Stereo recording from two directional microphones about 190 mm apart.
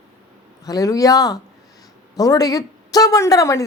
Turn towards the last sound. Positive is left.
turn(degrees=15)  # may be behind; listen again after turning